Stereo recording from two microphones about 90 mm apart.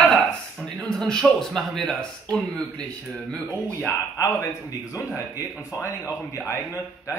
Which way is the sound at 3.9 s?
35° left (ahead or behind).